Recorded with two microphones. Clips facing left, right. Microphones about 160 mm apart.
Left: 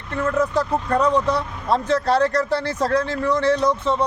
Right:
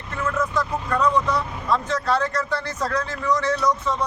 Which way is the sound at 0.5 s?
35° left (ahead or behind).